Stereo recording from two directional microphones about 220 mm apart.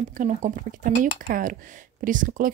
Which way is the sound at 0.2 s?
35° right (ahead or behind).